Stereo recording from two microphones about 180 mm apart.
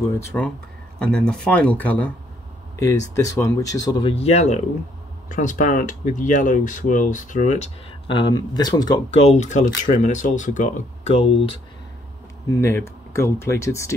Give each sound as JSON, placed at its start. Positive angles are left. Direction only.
{"t": 0.3, "sound": "speech", "side_deg": 15}
{"t": 9.1, "sound": "speech", "side_deg": 35}
{"t": 12.5, "sound": "speech", "side_deg": 15}